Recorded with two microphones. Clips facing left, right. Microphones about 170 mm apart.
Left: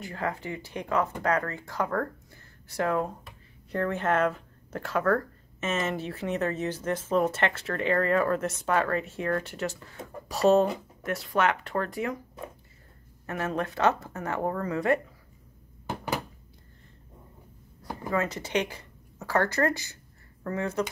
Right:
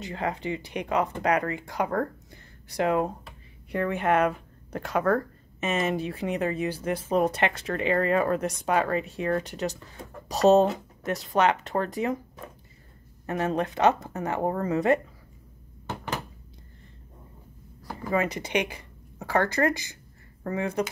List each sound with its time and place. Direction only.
0.0 s speech: 20° right (ahead or behind)
11.0 s speech: 20° right (ahead or behind)
13.3 s speech: 20° right (ahead or behind)
18.1 s speech: 15° right (ahead or behind)